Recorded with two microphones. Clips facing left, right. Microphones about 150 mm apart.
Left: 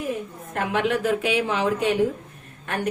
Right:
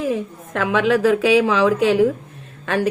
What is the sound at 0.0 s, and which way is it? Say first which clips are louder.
Speech: right 6 dB; 90° right.